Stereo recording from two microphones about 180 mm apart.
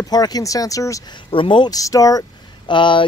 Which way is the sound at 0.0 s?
20° left (ahead or behind).